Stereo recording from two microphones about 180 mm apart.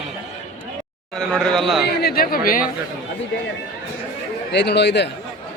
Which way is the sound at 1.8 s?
65° left (ahead or behind).